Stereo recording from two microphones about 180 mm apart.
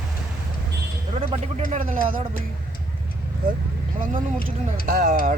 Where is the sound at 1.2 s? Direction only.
40° right (ahead or behind).